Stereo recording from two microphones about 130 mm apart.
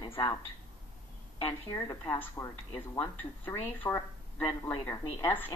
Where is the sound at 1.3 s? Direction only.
30° left (ahead or behind).